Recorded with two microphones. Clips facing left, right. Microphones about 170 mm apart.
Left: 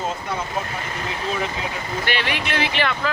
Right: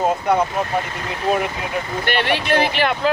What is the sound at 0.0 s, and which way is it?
Speech, 65° right (ahead or behind).